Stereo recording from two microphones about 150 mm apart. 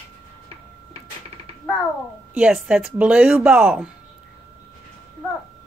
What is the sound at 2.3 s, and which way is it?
Speech, 5° right (ahead or behind).